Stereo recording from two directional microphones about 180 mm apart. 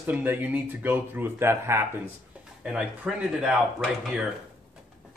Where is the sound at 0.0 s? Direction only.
10° right (ahead or behind).